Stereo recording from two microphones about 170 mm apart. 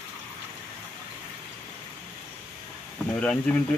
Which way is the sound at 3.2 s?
5° left (ahead or behind).